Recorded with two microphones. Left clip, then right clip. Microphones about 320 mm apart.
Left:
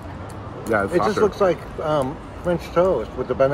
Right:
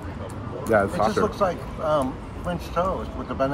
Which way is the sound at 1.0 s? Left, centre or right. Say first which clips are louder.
Left 4 dB; left.